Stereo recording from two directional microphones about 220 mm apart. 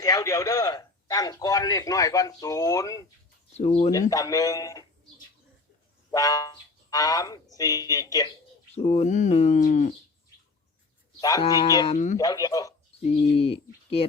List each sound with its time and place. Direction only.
0.0 s a man's voice: 15° left (ahead or behind)
3.6 s speech: 30° left (ahead or behind)
3.9 s a man's voice: 15° left (ahead or behind)
6.1 s speech: 15° left (ahead or behind)
8.7 s speech: 30° left (ahead or behind)
11.2 s a man's voice: 15° left (ahead or behind)
13.3 s speech: 25° left (ahead or behind)